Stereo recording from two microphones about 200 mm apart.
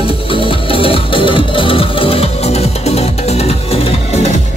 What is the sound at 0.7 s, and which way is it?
Music, 25° left (ahead or behind).